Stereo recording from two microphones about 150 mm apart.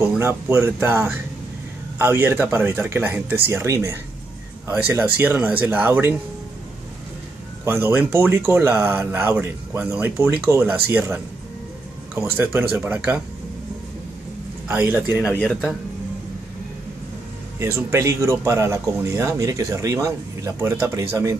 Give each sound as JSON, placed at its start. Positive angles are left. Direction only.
{"t": 0.2, "sound": "speech", "side_deg": -15}
{"t": 7.6, "sound": "speech", "side_deg": -15}
{"t": 12.2, "sound": "speech", "side_deg": -15}
{"t": 14.7, "sound": "speech", "side_deg": -15}
{"t": 17.8, "sound": "speech", "side_deg": -20}